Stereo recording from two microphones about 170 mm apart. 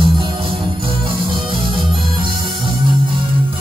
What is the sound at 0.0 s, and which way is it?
Music, 30° right (ahead or behind).